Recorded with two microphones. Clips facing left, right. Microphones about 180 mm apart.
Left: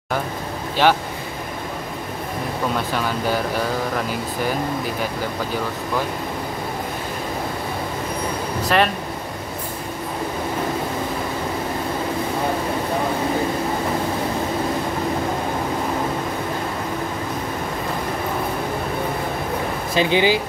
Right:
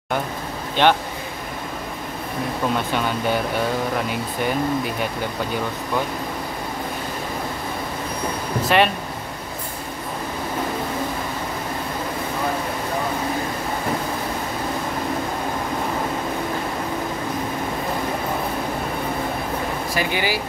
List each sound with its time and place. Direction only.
0.8 s speech: 5° left (ahead or behind)
8.6 s speech: centre (ahead or behind)
19.9 s speech: 20° left (ahead or behind)